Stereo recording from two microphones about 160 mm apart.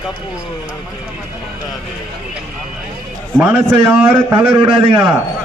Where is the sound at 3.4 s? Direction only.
10° right (ahead or behind).